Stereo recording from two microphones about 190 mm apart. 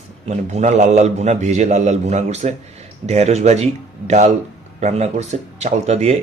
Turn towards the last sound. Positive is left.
turn(degrees=-35)  # may be behind; listen again after turning